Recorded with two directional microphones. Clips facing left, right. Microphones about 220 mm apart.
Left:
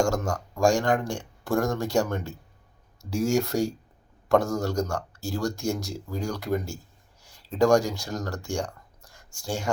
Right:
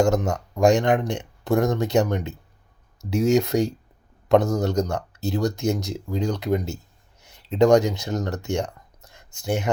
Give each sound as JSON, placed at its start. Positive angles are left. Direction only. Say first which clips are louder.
{"t": 0.0, "sound": "speech", "louder": "right 5 dB", "side_deg": -20}